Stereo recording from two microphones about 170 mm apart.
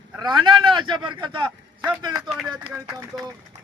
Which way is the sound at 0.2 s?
25° right (ahead or behind).